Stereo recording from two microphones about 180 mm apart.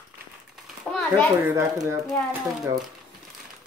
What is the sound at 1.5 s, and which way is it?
Speech, 15° right (ahead or behind).